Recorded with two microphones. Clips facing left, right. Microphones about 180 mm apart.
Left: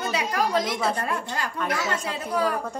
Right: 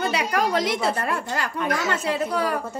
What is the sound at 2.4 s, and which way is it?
Speech, 5° right (ahead or behind).